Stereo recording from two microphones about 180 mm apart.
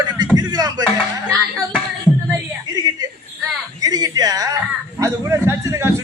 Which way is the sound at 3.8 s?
20° right (ahead or behind).